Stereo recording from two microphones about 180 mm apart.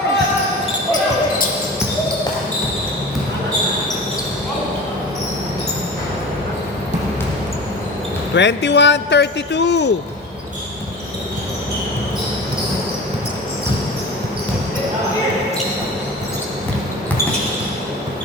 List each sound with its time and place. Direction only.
8.4 s a man's voice: 75° left (ahead or behind)